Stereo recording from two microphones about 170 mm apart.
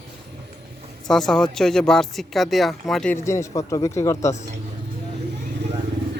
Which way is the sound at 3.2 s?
15° left (ahead or behind).